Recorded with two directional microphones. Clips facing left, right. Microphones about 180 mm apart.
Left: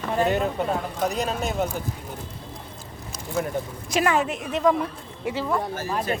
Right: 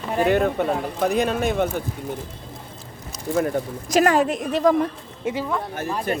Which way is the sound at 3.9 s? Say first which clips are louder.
Right 5 dB; 40° right (ahead or behind).